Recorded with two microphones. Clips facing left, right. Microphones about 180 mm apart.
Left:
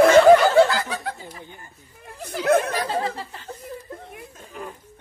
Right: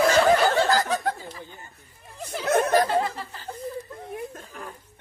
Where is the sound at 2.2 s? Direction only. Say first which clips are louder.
Left 4 dB; 60° left (ahead or behind).